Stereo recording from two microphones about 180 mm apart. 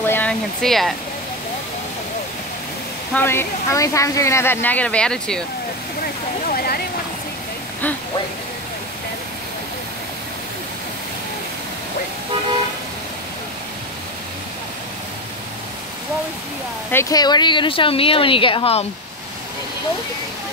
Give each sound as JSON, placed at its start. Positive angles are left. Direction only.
{"t": 0.0, "sound": "speech", "side_deg": 10}
{"t": 3.2, "sound": "speech", "side_deg": 15}
{"t": 6.5, "sound": "a sound", "side_deg": 55}
{"t": 16.9, "sound": "speech", "side_deg": 20}